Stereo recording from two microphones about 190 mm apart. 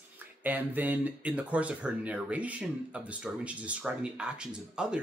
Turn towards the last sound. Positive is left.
turn(degrees=-5)  # may be behind; listen again after turning